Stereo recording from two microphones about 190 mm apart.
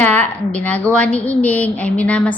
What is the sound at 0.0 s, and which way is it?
A woman's voice, 10° left (ahead or behind).